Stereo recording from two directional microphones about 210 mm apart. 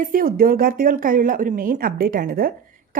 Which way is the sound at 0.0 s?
40° right (ahead or behind).